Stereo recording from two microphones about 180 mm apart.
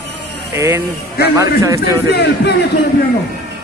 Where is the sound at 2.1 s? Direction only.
65° left (ahead or behind).